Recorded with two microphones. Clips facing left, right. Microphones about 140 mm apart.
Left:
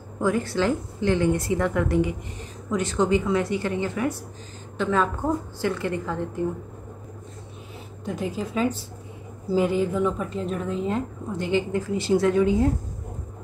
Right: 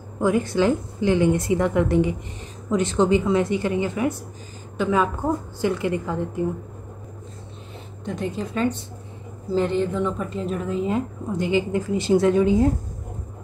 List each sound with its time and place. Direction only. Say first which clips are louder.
0.2 s a woman's voice: right 3 dB; 15° right (ahead or behind)
8.0 s a woman's voice: right 1 dB; 5° left (ahead or behind)
11.3 s a woman's voice: right 2 dB; 15° right (ahead or behind)